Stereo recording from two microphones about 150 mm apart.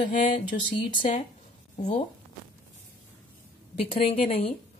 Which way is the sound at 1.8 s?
55° left (ahead or behind).